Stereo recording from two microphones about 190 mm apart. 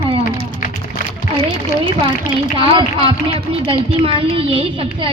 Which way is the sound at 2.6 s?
30° right (ahead or behind).